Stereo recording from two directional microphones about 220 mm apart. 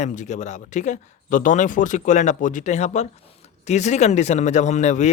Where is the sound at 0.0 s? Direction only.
35° left (ahead or behind).